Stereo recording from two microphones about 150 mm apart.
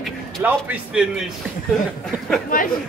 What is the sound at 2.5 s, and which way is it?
Speech, 70° left (ahead or behind).